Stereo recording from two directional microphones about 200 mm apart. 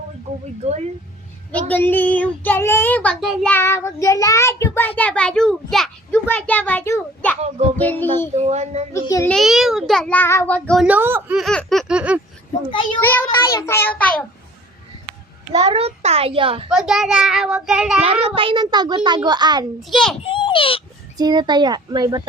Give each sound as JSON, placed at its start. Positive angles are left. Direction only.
{"t": 0.6, "sound": "a sound", "side_deg": -35}
{"t": 1.5, "sound": "a child's voice", "side_deg": 10}
{"t": 8.4, "sound": "a sound", "side_deg": -35}
{"t": 8.9, "sound": "a child's voice", "side_deg": 15}
{"t": 9.3, "sound": "a child's voice", "side_deg": 0}
{"t": 10.8, "sound": "a child's voice", "side_deg": -10}
{"t": 13.0, "sound": "a child's voice", "side_deg": 10}
{"t": 15.5, "sound": "a child's voice", "side_deg": -30}
{"t": 16.6, "sound": "a child's voice", "side_deg": -5}
{"t": 18.0, "sound": "a child's voice", "side_deg": -30}
{"t": 19.9, "sound": "a child's voice", "side_deg": 0}
{"t": 20.2, "sound": "a child's voice", "side_deg": 25}
{"t": 21.2, "sound": "a child's voice", "side_deg": -20}